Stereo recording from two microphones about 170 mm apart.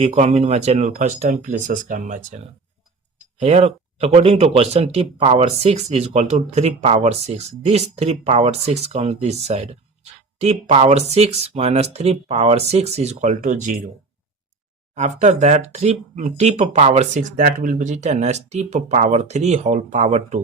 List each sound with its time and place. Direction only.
0.0 s speech: 40° right (ahead or behind)
3.4 s speech: 40° right (ahead or behind)
14.9 s speech: 45° right (ahead or behind)